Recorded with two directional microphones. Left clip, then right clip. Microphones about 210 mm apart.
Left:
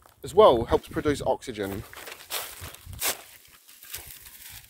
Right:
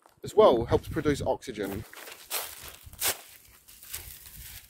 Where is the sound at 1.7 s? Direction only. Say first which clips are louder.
Left 2 dB; 45° left (ahead or behind).